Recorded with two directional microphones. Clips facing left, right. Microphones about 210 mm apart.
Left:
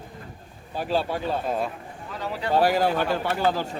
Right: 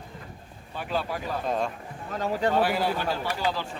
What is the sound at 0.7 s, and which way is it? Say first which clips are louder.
Speech: left 5 dB; 35° left (ahead or behind).